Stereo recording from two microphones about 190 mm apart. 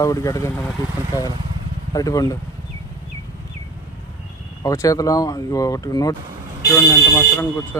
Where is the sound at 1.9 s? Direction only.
15° left (ahead or behind).